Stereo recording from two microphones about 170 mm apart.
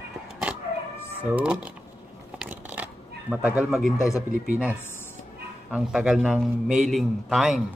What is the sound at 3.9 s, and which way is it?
Speech, 20° left (ahead or behind).